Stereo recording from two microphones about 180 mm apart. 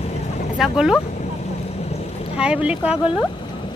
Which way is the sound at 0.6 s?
5° right (ahead or behind).